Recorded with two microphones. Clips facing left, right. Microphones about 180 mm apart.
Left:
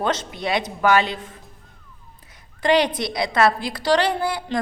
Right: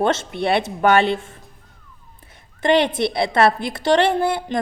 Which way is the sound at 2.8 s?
25° right (ahead or behind).